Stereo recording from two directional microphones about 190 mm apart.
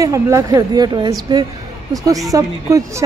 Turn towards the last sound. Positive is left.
turn(degrees=-15)  # may be behind; listen again after turning